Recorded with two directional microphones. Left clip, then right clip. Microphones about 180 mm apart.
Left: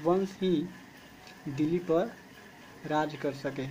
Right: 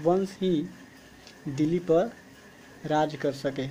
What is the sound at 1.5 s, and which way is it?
Speech, 15° right (ahead or behind).